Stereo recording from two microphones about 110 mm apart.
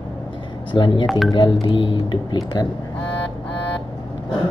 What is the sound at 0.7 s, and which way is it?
Speech, 45° left (ahead or behind).